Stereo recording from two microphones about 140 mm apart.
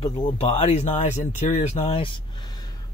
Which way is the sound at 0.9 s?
60° left (ahead or behind).